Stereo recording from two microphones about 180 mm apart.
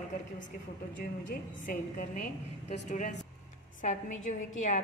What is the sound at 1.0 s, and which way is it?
A woman's voice, 50° left (ahead or behind).